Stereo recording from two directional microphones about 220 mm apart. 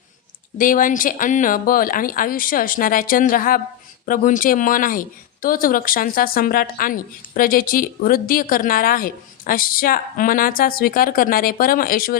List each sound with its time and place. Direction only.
0.6 s speech: 40° left (ahead or behind)